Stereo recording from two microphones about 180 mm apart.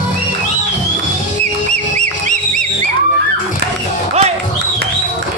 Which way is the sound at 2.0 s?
40° right (ahead or behind).